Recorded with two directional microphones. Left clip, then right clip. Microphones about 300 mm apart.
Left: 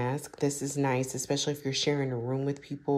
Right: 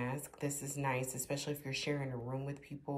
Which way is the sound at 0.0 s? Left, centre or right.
Centre.